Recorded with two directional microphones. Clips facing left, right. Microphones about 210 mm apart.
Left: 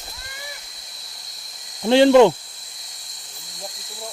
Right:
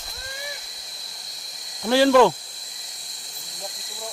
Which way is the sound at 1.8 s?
20° left (ahead or behind).